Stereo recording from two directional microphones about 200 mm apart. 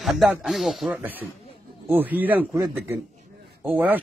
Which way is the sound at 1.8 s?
10° right (ahead or behind).